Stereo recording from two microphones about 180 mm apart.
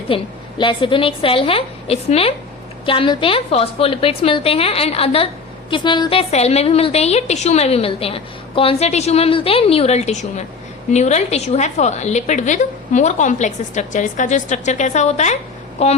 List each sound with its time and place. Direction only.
0.1 s a woman's voice: 30° left (ahead or behind)